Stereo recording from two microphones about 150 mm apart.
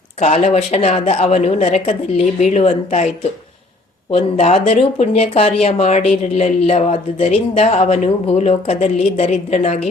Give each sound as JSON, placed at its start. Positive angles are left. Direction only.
{"t": 0.2, "sound": "speech", "side_deg": 50}
{"t": 4.1, "sound": "speech", "side_deg": 45}